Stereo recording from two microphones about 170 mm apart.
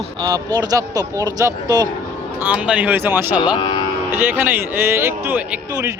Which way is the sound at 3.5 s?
30° left (ahead or behind).